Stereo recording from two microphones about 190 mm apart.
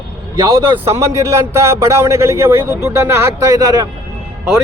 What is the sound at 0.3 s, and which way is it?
A man's voice, 20° right (ahead or behind).